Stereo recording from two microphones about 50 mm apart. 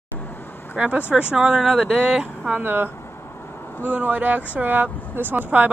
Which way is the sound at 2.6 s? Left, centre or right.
Right.